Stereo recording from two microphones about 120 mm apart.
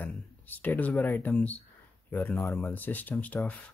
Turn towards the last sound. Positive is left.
turn(degrees=15)  # may be behind; listen again after turning